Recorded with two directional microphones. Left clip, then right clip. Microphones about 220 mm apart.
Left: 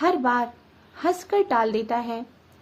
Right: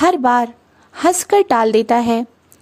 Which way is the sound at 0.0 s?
50° right (ahead or behind).